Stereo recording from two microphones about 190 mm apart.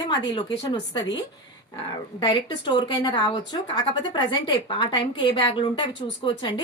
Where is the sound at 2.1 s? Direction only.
20° left (ahead or behind).